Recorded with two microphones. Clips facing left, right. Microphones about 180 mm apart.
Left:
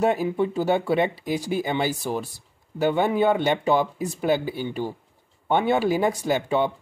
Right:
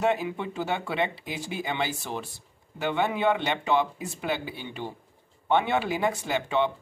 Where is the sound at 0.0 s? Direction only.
40° left (ahead or behind).